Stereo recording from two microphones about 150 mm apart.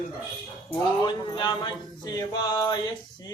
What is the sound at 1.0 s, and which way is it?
Male singing, 30° left (ahead or behind).